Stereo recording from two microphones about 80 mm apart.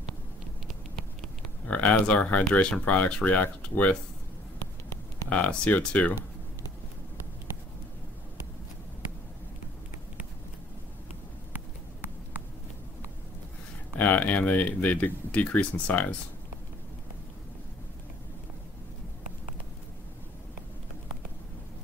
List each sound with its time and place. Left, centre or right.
1.7 s speech: centre
5.3 s speech: centre
13.9 s speech: centre